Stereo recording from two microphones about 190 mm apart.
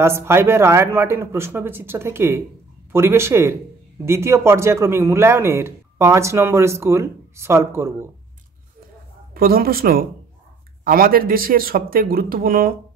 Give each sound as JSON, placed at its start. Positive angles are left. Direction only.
{"t": 0.0, "sound": "speech", "side_deg": -15}
{"t": 9.3, "sound": "speech", "side_deg": -50}